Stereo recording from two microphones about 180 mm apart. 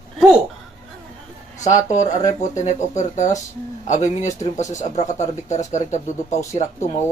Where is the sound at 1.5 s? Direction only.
40° left (ahead or behind).